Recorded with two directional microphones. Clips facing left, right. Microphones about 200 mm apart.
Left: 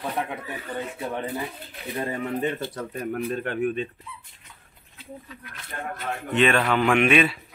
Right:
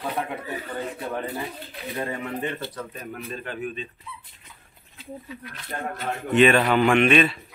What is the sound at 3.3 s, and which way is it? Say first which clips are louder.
Speech: left 5 dB; 60° left (ahead or behind).